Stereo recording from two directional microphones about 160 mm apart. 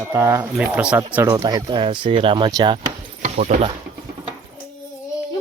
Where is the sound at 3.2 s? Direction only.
50° right (ahead or behind).